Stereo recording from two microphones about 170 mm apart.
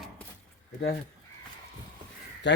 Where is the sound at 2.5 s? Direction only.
90° left.